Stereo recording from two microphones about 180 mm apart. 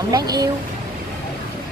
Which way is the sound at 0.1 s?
20° right (ahead or behind).